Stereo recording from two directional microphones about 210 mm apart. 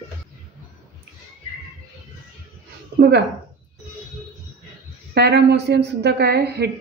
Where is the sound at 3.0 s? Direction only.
55° right (ahead or behind).